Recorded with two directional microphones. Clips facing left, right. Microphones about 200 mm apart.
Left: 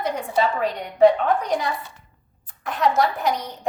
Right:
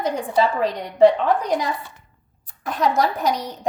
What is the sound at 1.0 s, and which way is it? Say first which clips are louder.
A woman's voice: right 1 dB; 35° right (ahead or behind).